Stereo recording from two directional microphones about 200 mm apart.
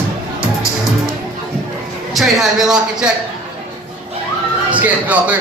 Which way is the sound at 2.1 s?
Centre (ahead or behind).